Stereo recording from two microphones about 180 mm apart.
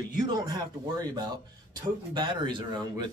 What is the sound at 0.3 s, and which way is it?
Speech, 25° right (ahead or behind).